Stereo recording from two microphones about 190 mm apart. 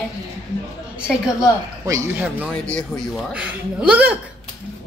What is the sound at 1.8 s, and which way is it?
Speech, 15° right (ahead or behind).